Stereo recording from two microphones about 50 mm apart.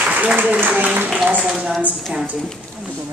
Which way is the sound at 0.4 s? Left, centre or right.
Right.